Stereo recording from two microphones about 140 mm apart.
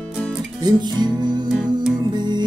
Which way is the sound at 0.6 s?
30° right (ahead or behind).